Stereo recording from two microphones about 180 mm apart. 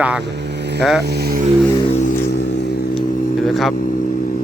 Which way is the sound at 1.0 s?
65° right (ahead or behind).